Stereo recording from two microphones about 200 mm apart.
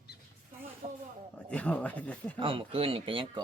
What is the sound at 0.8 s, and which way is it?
Speech, 35° right (ahead or behind).